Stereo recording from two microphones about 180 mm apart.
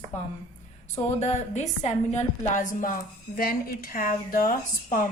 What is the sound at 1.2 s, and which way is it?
A woman's voice, 40° left (ahead or behind).